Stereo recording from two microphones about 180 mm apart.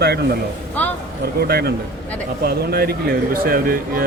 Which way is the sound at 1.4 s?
60° right (ahead or behind).